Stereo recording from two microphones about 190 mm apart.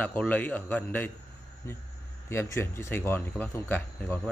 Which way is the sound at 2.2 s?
15° left (ahead or behind).